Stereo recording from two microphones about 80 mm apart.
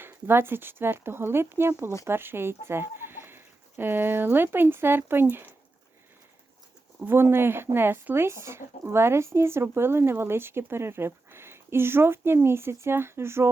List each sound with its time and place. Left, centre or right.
0.0 s speech: right
7.0 s speech: right